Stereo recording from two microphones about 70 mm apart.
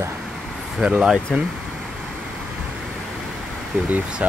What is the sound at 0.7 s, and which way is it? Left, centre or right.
Speech, centre.